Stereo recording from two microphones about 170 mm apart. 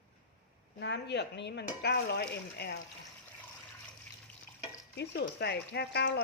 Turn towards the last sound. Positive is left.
turn(degrees=80)